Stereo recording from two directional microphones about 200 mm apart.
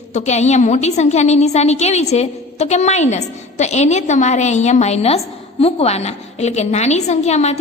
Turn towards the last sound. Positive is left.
turn(degrees=35)  # may be behind; listen again after turning